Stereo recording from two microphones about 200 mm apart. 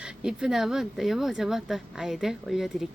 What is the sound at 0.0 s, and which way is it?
Speech, 5° right (ahead or behind).